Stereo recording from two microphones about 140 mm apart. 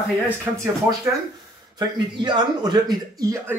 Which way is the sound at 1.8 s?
30° right (ahead or behind).